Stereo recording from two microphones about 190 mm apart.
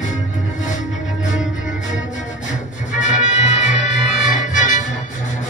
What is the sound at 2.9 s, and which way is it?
Music, 40° left (ahead or behind).